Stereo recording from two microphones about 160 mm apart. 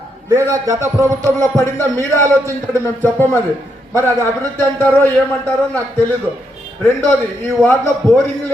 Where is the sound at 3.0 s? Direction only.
15° left (ahead or behind).